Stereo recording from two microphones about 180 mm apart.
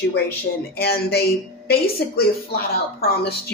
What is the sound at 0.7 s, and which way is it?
Speech, 60° left (ahead or behind).